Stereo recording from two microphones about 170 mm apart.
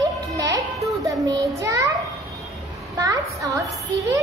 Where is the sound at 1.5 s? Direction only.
20° right (ahead or behind).